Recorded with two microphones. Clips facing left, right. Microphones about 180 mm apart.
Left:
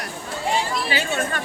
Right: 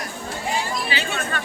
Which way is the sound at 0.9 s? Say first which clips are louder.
Left 3 dB; 45° left (ahead or behind).